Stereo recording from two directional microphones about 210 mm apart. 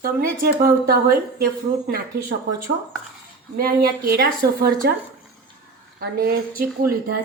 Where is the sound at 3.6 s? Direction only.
45° right (ahead or behind).